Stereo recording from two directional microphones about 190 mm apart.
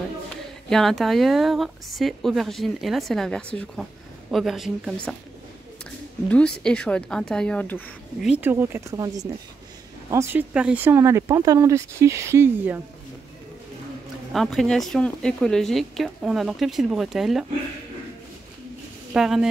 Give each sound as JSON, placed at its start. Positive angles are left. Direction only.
{"t": 0.7, "sound": "a woman's voice", "side_deg": 0}
{"t": 5.9, "sound": "a sound", "side_deg": 5}
{"t": 6.6, "sound": "a woman's voice", "side_deg": 5}
{"t": 8.4, "sound": "speech", "side_deg": -10}
{"t": 14.3, "sound": "a woman's voice", "side_deg": 0}
{"t": 19.1, "sound": "a woman's voice", "side_deg": -5}